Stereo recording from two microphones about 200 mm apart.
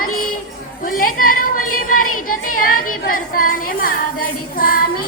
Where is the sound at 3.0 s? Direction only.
45° left (ahead or behind).